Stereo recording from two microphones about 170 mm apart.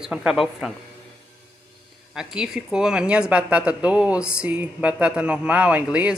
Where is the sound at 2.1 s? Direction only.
5° right (ahead or behind).